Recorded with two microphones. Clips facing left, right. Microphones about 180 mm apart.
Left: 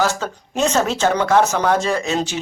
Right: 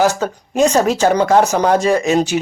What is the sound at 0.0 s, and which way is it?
Speech, 15° right (ahead or behind).